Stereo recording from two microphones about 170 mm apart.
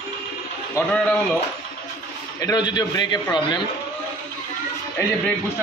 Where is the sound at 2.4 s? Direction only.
25° left (ahead or behind).